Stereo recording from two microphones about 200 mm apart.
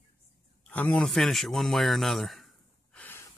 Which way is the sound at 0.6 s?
5° left (ahead or behind).